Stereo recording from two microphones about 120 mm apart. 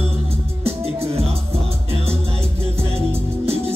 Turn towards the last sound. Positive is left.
turn(degrees=-55)  # may be behind; listen again after turning